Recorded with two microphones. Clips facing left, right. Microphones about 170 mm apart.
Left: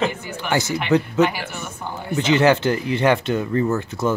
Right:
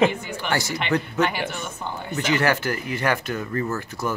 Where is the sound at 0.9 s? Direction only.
20° left (ahead or behind).